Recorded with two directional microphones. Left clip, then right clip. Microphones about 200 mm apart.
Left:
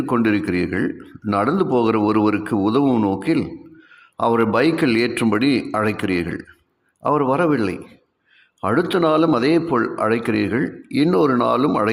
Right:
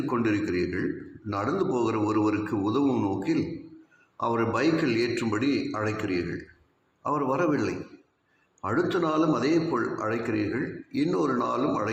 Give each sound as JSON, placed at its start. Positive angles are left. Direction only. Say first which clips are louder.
{"t": 0.0, "sound": "a man's voice", "louder": "left 7 dB", "side_deg": 45}